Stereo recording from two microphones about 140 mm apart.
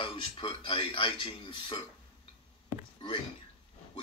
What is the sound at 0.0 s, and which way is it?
Speech, 40° left (ahead or behind).